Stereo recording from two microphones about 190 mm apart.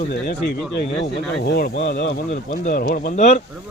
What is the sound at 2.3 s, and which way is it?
Speech, 45° left (ahead or behind).